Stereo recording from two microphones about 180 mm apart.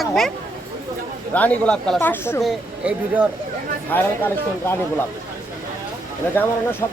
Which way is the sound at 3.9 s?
10° left (ahead or behind).